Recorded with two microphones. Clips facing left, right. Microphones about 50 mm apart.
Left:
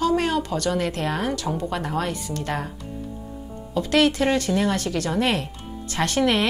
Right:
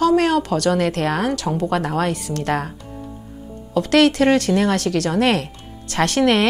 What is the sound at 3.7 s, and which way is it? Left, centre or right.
A woman's voice, right.